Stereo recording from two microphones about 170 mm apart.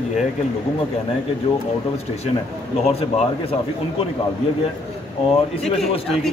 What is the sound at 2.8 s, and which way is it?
Speech, 40° left (ahead or behind).